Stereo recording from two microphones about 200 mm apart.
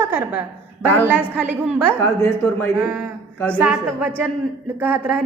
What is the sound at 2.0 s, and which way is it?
Speech, 15° left (ahead or behind).